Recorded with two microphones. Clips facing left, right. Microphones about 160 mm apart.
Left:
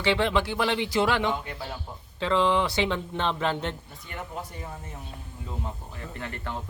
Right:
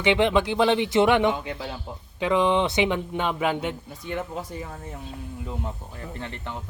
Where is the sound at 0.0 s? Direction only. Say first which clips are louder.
Right 4 dB; 20° right (ahead or behind).